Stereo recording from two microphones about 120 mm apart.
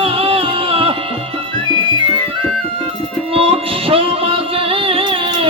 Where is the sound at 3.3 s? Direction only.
50° right (ahead or behind).